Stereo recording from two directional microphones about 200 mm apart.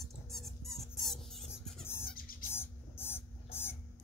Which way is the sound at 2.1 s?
45° left (ahead or behind).